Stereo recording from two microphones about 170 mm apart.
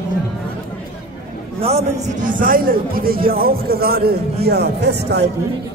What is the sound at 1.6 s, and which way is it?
Speech, 40° right (ahead or behind).